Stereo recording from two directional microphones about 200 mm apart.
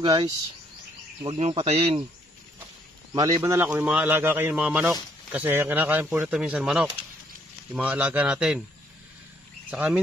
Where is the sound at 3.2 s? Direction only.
15° right (ahead or behind).